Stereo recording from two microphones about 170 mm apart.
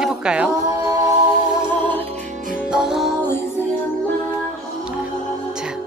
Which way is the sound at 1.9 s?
40° right (ahead or behind).